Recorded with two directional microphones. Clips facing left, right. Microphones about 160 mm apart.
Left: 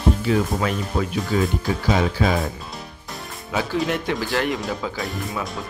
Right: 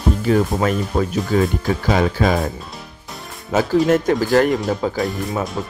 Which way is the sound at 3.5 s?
45° right (ahead or behind).